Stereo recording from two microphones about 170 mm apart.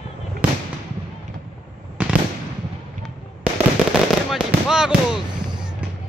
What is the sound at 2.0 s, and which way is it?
Fireworks, 10° right (ahead or behind).